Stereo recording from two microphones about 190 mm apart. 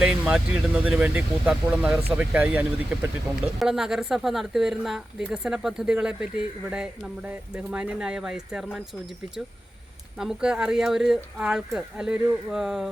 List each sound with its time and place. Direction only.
0.0 s speech: 5° right (ahead or behind)
10.2 s speech: 5° right (ahead or behind)